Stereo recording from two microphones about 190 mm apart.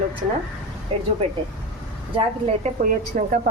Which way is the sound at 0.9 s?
30° right (ahead or behind).